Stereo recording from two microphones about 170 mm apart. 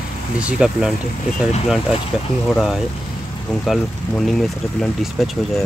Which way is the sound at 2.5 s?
Centre (ahead or behind).